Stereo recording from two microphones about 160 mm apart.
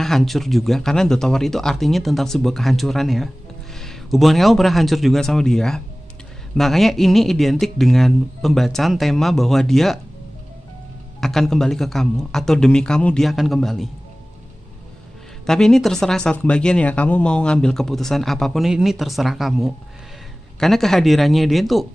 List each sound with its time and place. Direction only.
0.0 s a man's voice: centre (ahead or behind)
11.1 s speech: centre (ahead or behind)
15.4 s speech: 5° left (ahead or behind)